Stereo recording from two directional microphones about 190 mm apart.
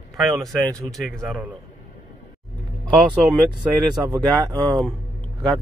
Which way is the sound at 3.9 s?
20° right (ahead or behind).